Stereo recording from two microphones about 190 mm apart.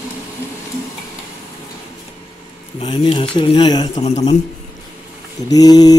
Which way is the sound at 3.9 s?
35° left (ahead or behind).